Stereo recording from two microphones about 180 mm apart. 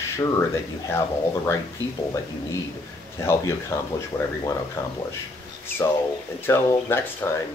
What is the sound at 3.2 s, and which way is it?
Speech, 15° left (ahead or behind).